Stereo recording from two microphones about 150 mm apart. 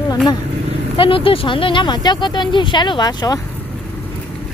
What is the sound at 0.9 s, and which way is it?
Speech, 35° left (ahead or behind).